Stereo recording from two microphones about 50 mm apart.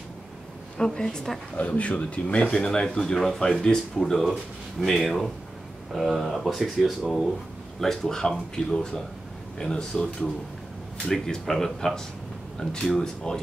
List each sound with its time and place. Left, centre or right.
0.7 s speech: centre
1.6 s speech: left; by 7.0 s centre
7.8 s speech: centre